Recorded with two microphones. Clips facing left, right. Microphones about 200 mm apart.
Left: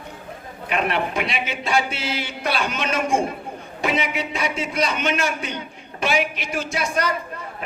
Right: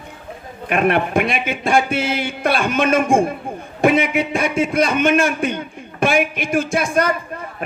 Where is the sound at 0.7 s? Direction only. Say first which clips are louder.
Right 6 dB; 55° right (ahead or behind).